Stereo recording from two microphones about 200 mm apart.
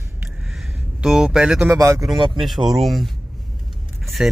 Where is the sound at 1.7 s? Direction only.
15° right (ahead or behind).